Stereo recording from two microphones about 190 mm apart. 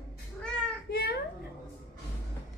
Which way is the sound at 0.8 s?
55° left (ahead or behind).